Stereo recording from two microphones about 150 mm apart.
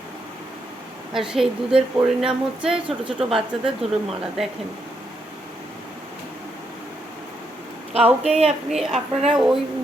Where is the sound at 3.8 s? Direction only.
40° right (ahead or behind).